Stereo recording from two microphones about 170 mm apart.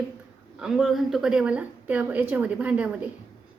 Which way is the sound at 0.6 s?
Centre (ahead or behind).